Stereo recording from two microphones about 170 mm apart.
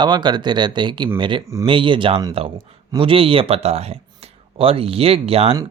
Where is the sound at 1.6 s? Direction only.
30° right (ahead or behind).